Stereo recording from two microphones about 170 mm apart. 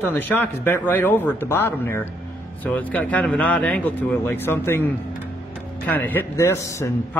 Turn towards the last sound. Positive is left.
turn(degrees=15)  # may be behind; listen again after turning